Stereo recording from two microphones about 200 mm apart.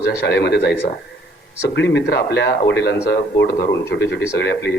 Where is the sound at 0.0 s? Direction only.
55° left (ahead or behind).